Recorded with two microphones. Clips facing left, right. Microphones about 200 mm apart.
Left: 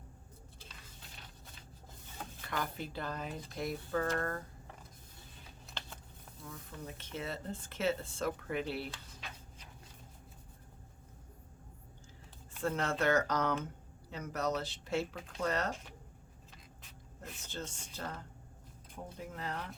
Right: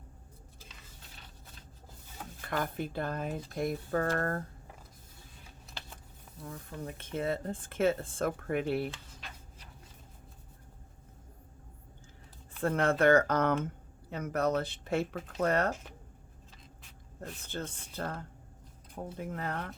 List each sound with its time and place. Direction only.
2.5 s speech: 50° right (ahead or behind)
5.8 s a sound: 5° right (ahead or behind)
6.4 s speech: 50° right (ahead or behind)
12.5 s speech: 55° right (ahead or behind)
17.2 s speech: 55° right (ahead or behind)